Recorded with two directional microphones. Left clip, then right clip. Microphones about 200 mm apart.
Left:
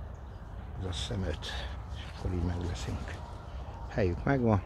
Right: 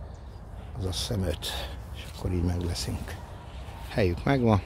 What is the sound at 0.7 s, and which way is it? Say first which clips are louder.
Speech: right 5 dB; 40° right (ahead or behind).